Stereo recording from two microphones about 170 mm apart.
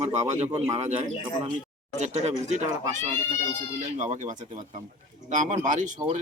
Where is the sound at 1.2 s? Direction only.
30° right (ahead or behind).